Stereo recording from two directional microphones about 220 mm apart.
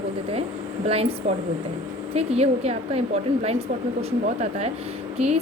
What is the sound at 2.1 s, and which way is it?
A woman's voice, 30° right (ahead or behind).